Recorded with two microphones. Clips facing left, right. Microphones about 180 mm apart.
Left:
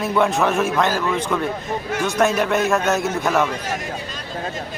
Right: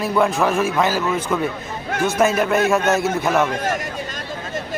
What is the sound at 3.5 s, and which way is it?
Speech, 50° right (ahead or behind).